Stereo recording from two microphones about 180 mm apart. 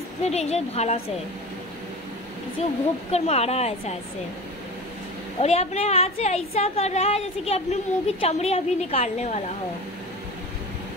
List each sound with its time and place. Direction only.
0.2 s a woman's voice: 35° left (ahead or behind)
2.6 s a woman's voice: 35° left (ahead or behind)
5.4 s a woman's voice: 35° left (ahead or behind)